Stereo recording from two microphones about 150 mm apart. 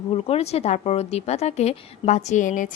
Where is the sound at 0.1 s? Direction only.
40° left (ahead or behind).